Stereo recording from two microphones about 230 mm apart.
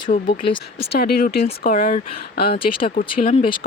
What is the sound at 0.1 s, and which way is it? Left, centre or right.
Speech, left.